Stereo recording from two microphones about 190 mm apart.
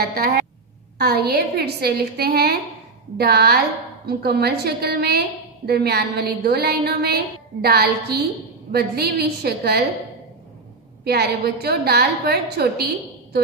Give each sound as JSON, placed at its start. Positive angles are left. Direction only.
{"t": 0.0, "sound": "a woman's voice", "side_deg": -55}
{"t": 11.1, "sound": "a woman's voice", "side_deg": -55}